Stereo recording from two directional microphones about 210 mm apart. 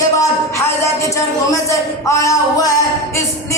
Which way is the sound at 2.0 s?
15° left (ahead or behind).